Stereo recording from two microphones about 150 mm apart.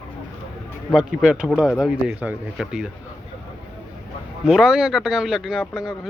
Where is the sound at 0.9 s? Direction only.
5° right (ahead or behind).